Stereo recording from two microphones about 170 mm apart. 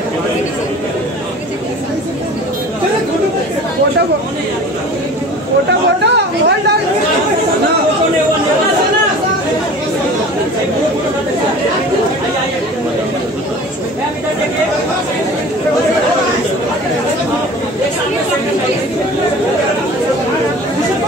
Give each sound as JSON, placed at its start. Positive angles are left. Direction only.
{"t": 6.0, "sound": "chatter", "side_deg": -80}